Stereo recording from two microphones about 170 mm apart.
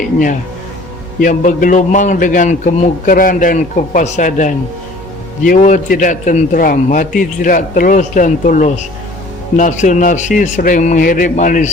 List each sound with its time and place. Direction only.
1.2 s a man's voice: 50° left (ahead or behind)